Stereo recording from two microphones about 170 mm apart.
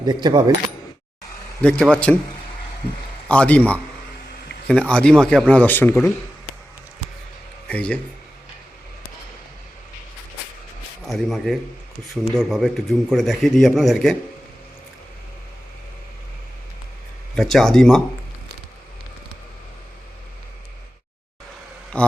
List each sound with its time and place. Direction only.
0.0 s speech: 25° right (ahead or behind)
1.6 s speech: 5° left (ahead or behind)
3.2 s speech: 5° left (ahead or behind)
7.7 s speech: 10° left (ahead or behind)
11.0 s a man's voice: centre (ahead or behind)
17.3 s a man's voice: centre (ahead or behind)
21.9 s speech: 5° left (ahead or behind)